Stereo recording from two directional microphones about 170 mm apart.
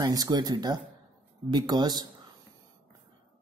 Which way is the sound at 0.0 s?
20° right (ahead or behind).